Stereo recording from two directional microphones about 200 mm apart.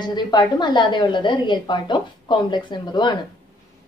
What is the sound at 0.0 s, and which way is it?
A woman's voice, 20° left (ahead or behind).